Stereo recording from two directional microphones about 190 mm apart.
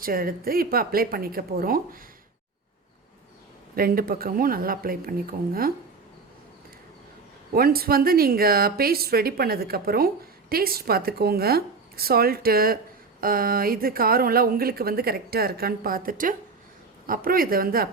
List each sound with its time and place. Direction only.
0.0 s speech: 50° right (ahead or behind)
3.8 s speech: 50° right (ahead or behind)
7.5 s speech: 50° right (ahead or behind)